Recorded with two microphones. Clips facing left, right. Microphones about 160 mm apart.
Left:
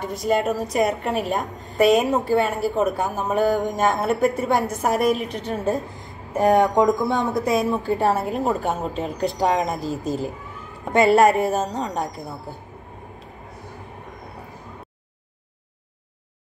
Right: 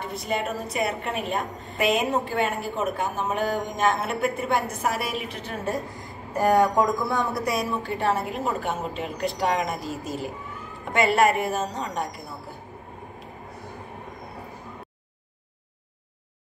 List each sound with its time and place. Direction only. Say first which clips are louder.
0.0 s a woman's voice: left 7 dB; 40° left (ahead or behind)
6.3 s a woman's voice: left 3 dB; 20° left (ahead or behind)